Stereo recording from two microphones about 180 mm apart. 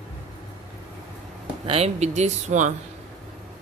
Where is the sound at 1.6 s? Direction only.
35° right (ahead or behind).